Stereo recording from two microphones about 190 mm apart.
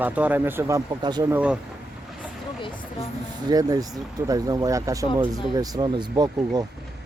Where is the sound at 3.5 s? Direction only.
20° right (ahead or behind).